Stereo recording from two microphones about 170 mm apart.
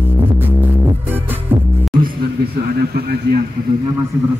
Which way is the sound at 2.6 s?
65° right (ahead or behind).